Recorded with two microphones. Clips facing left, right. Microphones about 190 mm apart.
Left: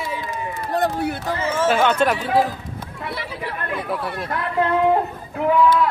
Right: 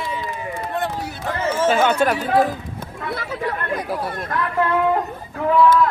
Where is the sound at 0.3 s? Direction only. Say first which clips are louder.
Left 1 dB; 40° left (ahead or behind).